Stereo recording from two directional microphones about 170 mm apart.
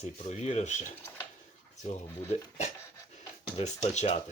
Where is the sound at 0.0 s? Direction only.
40° left (ahead or behind).